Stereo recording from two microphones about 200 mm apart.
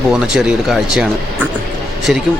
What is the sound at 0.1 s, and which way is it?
Speech, 5° right (ahead or behind).